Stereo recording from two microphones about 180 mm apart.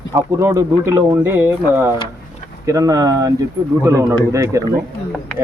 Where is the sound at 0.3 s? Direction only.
15° right (ahead or behind).